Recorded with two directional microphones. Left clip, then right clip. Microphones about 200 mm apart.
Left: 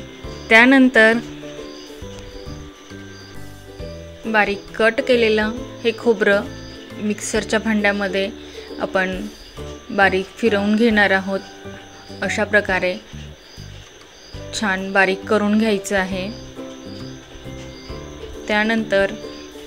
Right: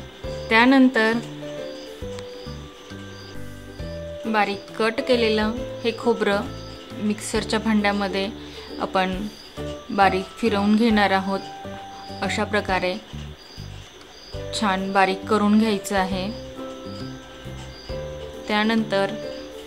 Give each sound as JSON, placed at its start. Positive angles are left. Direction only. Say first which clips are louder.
{"t": 0.5, "sound": "speech", "louder": "left 5 dB", "side_deg": 10}
{"t": 4.3, "sound": "a woman's voice", "louder": "left 5 dB", "side_deg": 5}
{"t": 14.5, "sound": "a woman's voice", "louder": "left 2 dB", "side_deg": 5}
{"t": 18.5, "sound": "a woman's voice", "louder": "left 4 dB", "side_deg": 5}